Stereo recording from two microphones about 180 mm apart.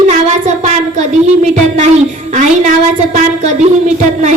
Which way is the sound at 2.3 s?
45° right (ahead or behind).